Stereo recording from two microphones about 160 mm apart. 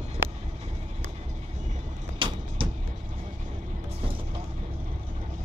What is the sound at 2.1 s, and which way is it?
Vehicle, 35° right (ahead or behind).